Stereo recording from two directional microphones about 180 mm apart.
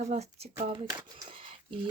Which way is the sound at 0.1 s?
35° right (ahead or behind).